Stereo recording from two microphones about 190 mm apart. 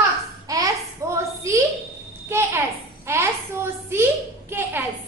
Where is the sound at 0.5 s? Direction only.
20° right (ahead or behind).